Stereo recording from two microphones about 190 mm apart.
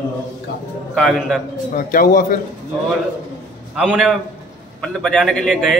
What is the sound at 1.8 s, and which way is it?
Speech, 45° left (ahead or behind).